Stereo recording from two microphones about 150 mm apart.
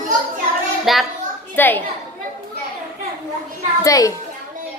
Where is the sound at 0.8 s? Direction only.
Centre (ahead or behind).